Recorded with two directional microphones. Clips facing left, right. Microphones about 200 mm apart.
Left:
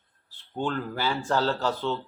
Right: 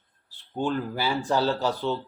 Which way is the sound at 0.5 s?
15° right (ahead or behind).